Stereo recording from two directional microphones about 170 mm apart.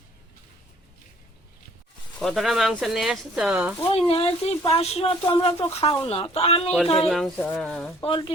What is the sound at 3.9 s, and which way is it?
Speech, 35° left (ahead or behind).